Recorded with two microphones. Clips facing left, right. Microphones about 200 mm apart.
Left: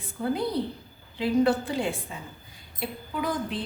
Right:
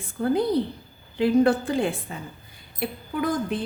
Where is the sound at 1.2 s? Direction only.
50° right (ahead or behind).